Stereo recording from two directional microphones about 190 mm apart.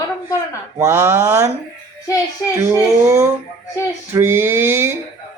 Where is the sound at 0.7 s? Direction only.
15° right (ahead or behind).